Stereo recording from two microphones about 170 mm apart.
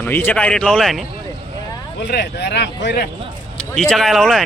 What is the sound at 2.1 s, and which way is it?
Speech, 70° left (ahead or behind).